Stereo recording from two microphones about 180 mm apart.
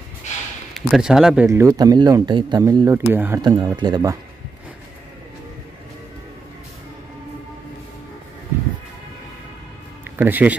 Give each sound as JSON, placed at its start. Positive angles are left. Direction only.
{"t": 0.7, "sound": "speech", "side_deg": 0}
{"t": 1.5, "sound": "speech", "side_deg": -15}
{"t": 3.4, "sound": "speech", "side_deg": -25}
{"t": 10.0, "sound": "a sound", "side_deg": -10}